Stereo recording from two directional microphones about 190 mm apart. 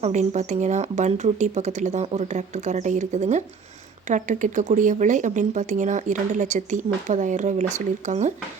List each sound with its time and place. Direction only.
0.0 s speech: 40° right (ahead or behind)